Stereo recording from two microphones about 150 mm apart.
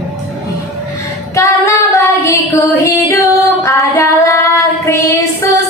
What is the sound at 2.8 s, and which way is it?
A woman's voice, 20° left (ahead or behind).